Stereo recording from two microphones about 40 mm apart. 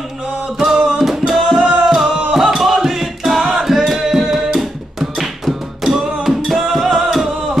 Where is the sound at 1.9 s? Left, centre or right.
Centre.